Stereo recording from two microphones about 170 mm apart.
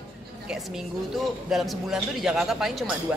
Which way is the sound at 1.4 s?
Centre (ahead or behind).